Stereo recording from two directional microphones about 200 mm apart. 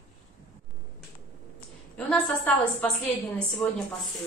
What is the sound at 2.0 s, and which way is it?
A woman's voice, 5° left (ahead or behind).